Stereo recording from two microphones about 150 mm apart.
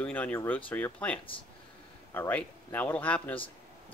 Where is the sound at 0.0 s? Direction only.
10° left (ahead or behind).